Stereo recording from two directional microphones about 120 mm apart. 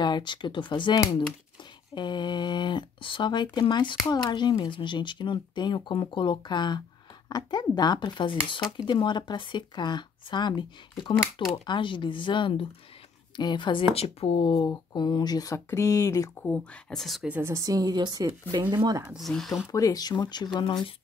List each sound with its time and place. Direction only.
0.0 s speech: 40° left (ahead or behind); by 14.6 s 55° left (ahead or behind)
14.6 s speech: 35° left (ahead or behind)
16.4 s speech: 5° left (ahead or behind)
17.3 s a woman's voice: 20° right (ahead or behind)
19.0 s speech: centre (ahead or behind)
19.7 s speech: 30° left (ahead or behind)